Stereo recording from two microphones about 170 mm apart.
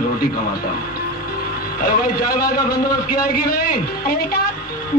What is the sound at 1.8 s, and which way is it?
A woman's voice, 60° left (ahead or behind).